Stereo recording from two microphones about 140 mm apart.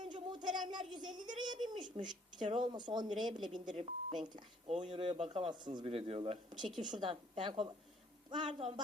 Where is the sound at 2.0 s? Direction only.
35° right (ahead or behind).